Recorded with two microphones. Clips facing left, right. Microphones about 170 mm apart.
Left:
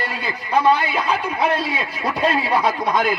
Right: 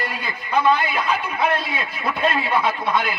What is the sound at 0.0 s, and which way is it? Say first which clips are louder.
A man's voice: left 2 dB; 30° left (ahead or behind).